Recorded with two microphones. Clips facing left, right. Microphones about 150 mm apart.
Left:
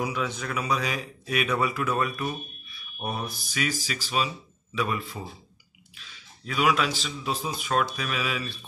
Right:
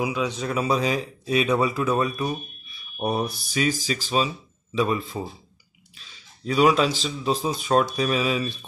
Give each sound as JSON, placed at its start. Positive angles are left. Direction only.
{"t": 0.0, "sound": "a man's voice", "side_deg": -15}
{"t": 0.4, "sound": "speech", "side_deg": -25}